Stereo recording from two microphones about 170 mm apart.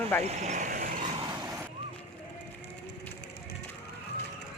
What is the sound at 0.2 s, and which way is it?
Speech, 40° right (ahead or behind).